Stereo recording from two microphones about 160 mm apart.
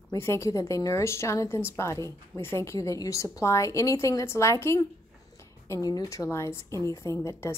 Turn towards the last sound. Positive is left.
turn(degrees=20)  # may be behind; listen again after turning